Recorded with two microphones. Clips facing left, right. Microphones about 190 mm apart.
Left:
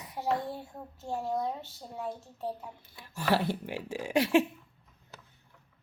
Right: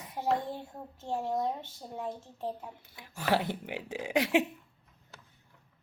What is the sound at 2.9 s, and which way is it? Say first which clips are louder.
Speech: left 1 dB; 15° right (ahead or behind).